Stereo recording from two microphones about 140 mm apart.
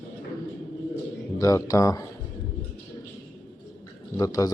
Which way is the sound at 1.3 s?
25° left (ahead or behind).